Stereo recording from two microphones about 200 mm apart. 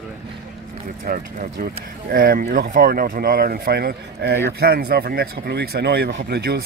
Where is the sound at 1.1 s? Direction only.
45° right (ahead or behind).